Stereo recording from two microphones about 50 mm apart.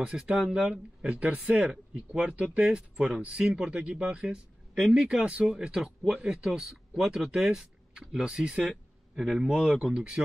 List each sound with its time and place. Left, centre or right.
0.0 s speech: centre
1.5 s speech: centre
2.0 s speech: right
3.4 s speech: centre
3.7 s speech: right
6.0 s speech: centre